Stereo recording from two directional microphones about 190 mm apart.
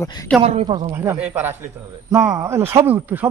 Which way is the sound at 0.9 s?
10° right (ahead or behind).